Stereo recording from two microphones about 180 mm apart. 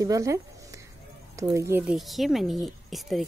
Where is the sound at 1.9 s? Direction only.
Centre (ahead or behind).